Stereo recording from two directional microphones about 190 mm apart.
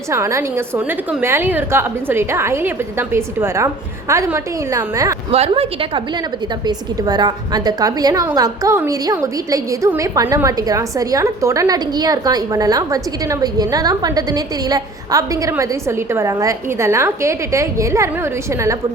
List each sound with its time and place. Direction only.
0.1 s a woman's voice: 15° right (ahead or behind)
5.3 s a woman's voice: 30° right (ahead or behind); by 18.1 s 15° right (ahead or behind)